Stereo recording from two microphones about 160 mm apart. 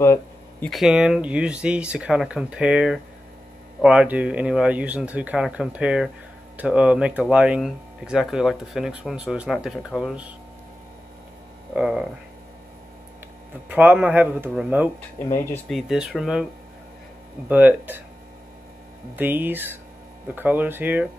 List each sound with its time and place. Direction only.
0.0 s a sound: 15° left (ahead or behind)
0.7 s speech: centre (ahead or behind)
11.7 s speech: 5° right (ahead or behind)
13.7 s speech: 10° right (ahead or behind)
17.5 s speech: 10° right (ahead or behind)
19.1 s speech: 10° right (ahead or behind)